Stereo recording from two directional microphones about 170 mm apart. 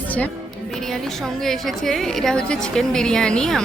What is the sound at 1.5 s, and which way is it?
A woman's voice, centre (ahead or behind).